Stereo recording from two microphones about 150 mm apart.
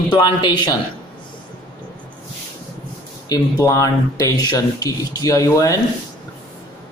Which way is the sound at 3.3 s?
25° left (ahead or behind).